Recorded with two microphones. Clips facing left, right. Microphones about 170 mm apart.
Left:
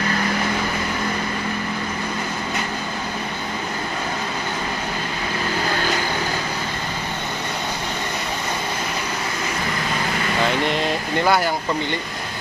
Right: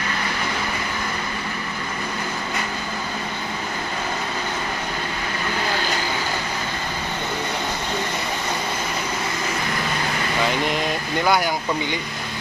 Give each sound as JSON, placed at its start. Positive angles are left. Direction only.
{"t": 11.2, "sound": "speech", "side_deg": 0}